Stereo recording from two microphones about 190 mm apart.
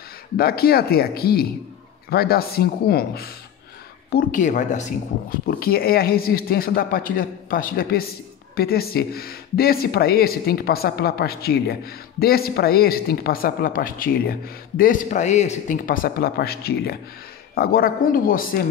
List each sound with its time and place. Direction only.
0.4 s speech: 55° left (ahead or behind)
5.5 s speech: 55° left (ahead or behind)